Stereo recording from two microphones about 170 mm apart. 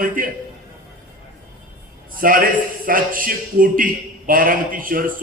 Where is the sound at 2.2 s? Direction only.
55° right (ahead or behind).